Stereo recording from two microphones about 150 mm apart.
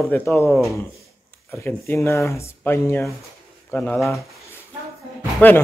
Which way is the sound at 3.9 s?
Centre (ahead or behind).